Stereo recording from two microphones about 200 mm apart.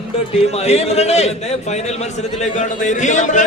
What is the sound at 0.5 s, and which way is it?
A man's voice, 30° left (ahead or behind).